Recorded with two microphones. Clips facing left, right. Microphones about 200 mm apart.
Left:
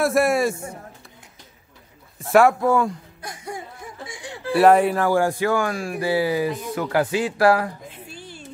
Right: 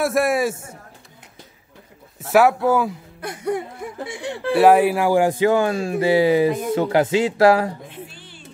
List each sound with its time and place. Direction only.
0.0 s a man's voice: centre (ahead or behind)
2.3 s a man's voice: 5° right (ahead or behind)
3.2 s whimper: 60° right (ahead or behind)
4.6 s speech: 5° right (ahead or behind); by 7.7 s 25° right (ahead or behind)
8.1 s a sound: 45° left (ahead or behind)